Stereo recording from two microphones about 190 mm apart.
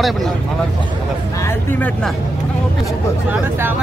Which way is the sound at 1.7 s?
10° left (ahead or behind).